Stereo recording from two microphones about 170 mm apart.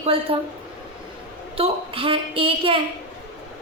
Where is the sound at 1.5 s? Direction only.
35° right (ahead or behind).